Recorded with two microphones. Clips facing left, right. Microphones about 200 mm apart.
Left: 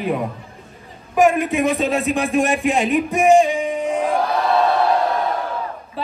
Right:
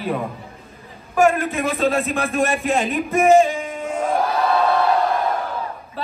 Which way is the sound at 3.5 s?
15° left (ahead or behind).